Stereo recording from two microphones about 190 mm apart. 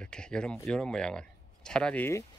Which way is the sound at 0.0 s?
5° left (ahead or behind).